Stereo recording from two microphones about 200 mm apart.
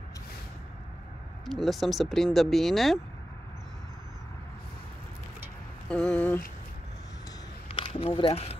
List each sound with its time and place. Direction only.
1.6 s speech: centre (ahead or behind)
5.9 s a sound: 5° left (ahead or behind)
7.6 s speech: 25° left (ahead or behind)